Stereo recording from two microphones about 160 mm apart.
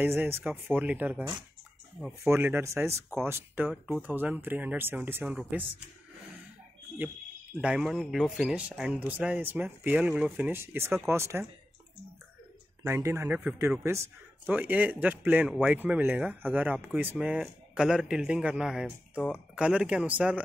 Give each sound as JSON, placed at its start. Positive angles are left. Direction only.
{"t": 0.0, "sound": "speech", "side_deg": -15}
{"t": 7.5, "sound": "speech", "side_deg": -5}
{"t": 12.8, "sound": "speech", "side_deg": -15}